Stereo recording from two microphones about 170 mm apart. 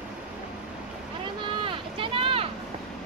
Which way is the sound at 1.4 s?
30° right (ahead or behind).